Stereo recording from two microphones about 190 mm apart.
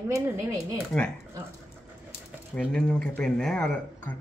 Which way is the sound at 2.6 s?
5° left (ahead or behind).